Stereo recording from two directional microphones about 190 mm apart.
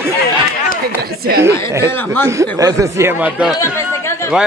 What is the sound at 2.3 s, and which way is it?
Speech, 20° right (ahead or behind).